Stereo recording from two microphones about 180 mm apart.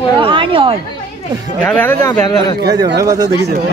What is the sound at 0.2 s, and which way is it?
Speech, 30° right (ahead or behind).